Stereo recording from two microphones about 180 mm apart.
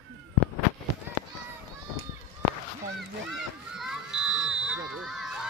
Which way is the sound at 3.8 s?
5° right (ahead or behind).